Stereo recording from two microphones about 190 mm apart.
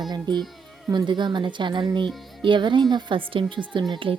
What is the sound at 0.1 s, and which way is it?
Speech, 25° right (ahead or behind).